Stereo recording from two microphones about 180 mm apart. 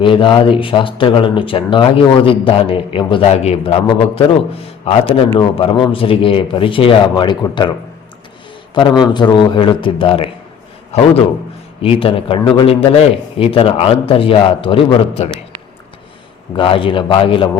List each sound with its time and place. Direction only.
0.0 s speech: 30° left (ahead or behind)
8.7 s a man's voice: 25° left (ahead or behind)
16.6 s speech: 30° left (ahead or behind)